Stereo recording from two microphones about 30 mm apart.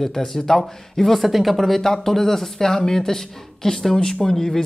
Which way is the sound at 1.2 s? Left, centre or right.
Centre.